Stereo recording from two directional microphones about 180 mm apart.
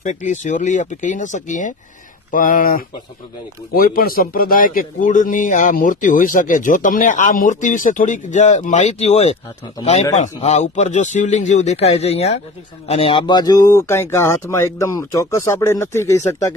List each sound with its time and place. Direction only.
0.0 s a man's voice: 40° left (ahead or behind); by 16.5 s 15° left (ahead or behind)